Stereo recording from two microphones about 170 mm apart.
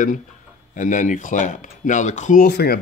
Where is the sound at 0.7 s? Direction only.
50° left (ahead or behind).